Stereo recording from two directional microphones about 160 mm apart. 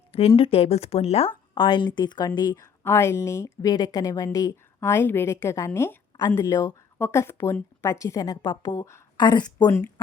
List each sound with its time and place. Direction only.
0.1 s a woman's voice: 35° left (ahead or behind)
2.8 s a woman's voice: 15° left (ahead or behind)